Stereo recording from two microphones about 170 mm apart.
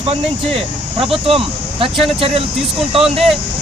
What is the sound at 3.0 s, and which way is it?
Speech, centre (ahead or behind).